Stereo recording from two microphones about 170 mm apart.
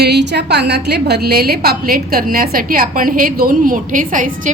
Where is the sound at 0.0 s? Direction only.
80° right.